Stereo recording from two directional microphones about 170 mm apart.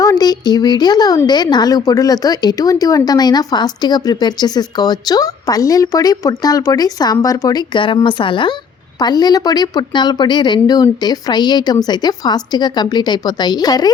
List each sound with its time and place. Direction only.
0.0 s speech: 20° left (ahead or behind)